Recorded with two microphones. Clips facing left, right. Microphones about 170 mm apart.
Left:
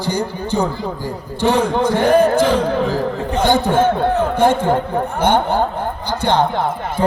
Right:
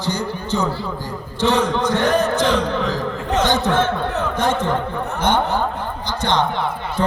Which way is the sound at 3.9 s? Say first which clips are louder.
Left 5 dB; 55° left (ahead or behind).